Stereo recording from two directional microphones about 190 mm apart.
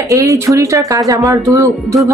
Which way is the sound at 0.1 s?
15° right (ahead or behind).